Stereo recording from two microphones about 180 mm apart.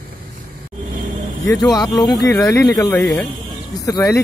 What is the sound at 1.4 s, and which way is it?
Speech, 20° left (ahead or behind).